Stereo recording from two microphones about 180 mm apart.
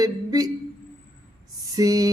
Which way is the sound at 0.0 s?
20° right (ahead or behind).